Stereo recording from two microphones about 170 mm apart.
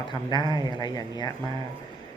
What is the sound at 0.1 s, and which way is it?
Speech, 25° left (ahead or behind).